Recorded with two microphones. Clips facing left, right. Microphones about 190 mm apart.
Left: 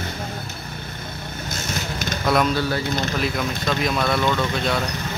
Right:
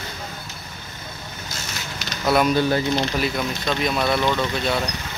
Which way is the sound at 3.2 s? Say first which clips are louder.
Even; centre (ahead or behind).